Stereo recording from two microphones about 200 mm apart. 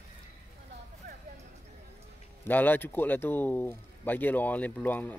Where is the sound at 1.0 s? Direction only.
40° right (ahead or behind).